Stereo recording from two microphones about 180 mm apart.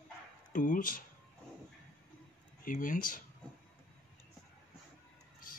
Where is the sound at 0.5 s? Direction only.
50° left (ahead or behind).